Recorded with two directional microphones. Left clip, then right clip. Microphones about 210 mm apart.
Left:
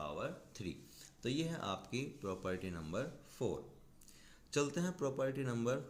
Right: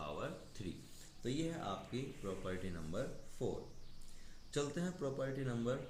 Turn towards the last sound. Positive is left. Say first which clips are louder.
# left 2 dB
turn(degrees=35)  # may be behind; listen again after turning